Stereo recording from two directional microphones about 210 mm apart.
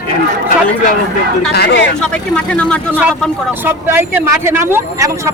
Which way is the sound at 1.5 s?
55° left (ahead or behind).